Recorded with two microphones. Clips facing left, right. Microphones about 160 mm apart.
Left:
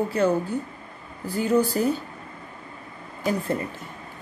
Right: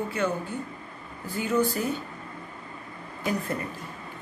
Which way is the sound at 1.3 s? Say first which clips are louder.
Left 4 dB; 35° left (ahead or behind).